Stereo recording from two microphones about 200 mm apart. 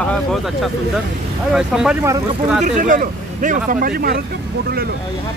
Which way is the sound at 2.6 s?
40° right (ahead or behind).